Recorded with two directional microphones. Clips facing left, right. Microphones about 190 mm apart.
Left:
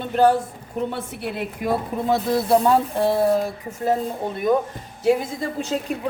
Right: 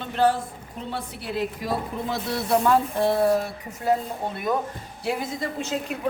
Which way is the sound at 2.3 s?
30° left (ahead or behind).